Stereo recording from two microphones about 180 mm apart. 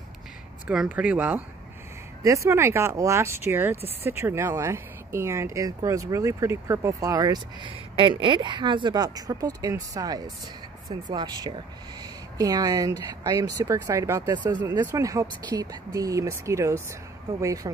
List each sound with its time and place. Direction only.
0.7 s speech: 10° right (ahead or behind)